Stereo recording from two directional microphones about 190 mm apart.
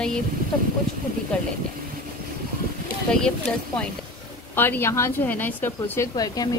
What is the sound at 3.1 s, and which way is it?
A woman's voice, 5° left (ahead or behind).